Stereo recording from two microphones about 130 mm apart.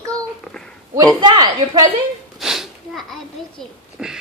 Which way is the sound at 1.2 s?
35° right (ahead or behind).